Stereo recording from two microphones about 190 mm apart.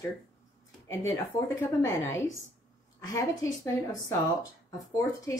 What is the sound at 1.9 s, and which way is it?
Speech, 15° left (ahead or behind).